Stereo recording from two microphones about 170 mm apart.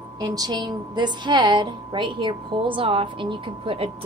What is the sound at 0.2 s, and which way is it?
A woman's voice, 20° right (ahead or behind).